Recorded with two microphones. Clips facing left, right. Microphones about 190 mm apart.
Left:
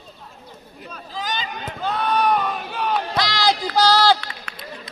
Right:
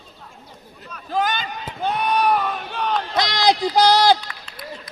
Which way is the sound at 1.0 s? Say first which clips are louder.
Right 6 dB; 60° right (ahead or behind).